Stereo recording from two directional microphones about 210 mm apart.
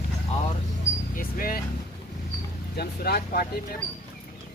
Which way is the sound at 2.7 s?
50° left (ahead or behind).